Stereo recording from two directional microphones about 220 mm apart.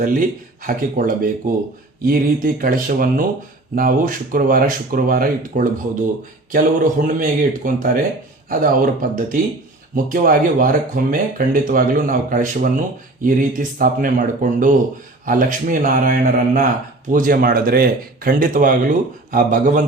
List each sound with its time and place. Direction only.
0.0 s speech: 40° right (ahead or behind)